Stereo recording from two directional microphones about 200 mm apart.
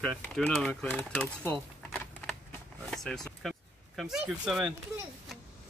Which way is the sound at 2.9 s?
Centre (ahead or behind).